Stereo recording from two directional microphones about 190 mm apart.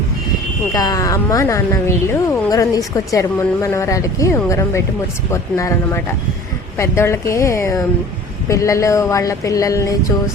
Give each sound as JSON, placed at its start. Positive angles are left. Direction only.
{"t": 0.7, "sound": "speech", "side_deg": 20}